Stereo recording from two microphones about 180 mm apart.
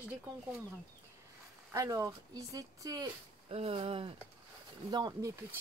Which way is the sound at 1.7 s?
20° right (ahead or behind).